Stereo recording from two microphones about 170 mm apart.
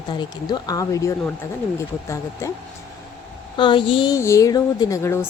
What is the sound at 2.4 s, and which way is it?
Speech, 15° left (ahead or behind).